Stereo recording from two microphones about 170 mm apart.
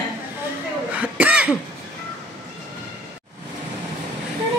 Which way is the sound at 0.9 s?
10° right (ahead or behind).